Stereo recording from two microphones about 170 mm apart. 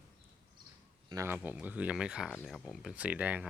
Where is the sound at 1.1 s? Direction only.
20° right (ahead or behind).